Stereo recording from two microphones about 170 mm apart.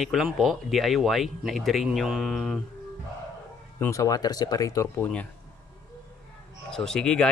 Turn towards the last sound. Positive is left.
turn(degrees=5)  # may be behind; listen again after turning